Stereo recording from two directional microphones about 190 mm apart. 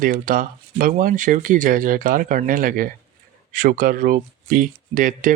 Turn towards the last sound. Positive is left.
turn(degrees=-45)  # may be behind; listen again after turning